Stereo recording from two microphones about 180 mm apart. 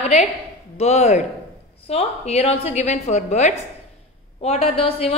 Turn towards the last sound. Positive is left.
turn(degrees=35)  # may be behind; listen again after turning